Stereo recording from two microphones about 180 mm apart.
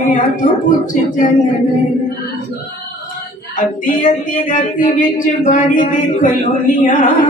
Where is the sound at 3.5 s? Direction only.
45° left (ahead or behind).